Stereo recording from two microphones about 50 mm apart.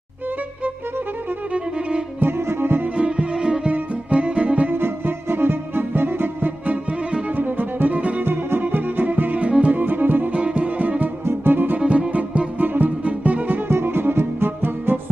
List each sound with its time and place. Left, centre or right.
2.1 s music: right
3.0 s music: right
4.7 s music: right
7.3 s music: right
8.2 s music: right
10.3 s music: right
11.2 s music: right
11.8 s music: right
13.7 s music: right